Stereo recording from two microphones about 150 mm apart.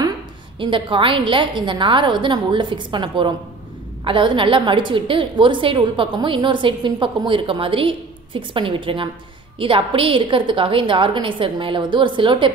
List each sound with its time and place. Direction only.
0.6 s a woman's voice: 35° right (ahead or behind)